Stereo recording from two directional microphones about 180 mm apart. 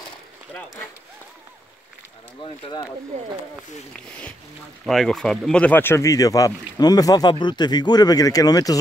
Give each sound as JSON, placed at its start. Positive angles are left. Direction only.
{"t": 0.5, "sound": "speech", "side_deg": 10}
{"t": 2.4, "sound": "speech", "side_deg": 30}
{"t": 3.9, "sound": "speech", "side_deg": 5}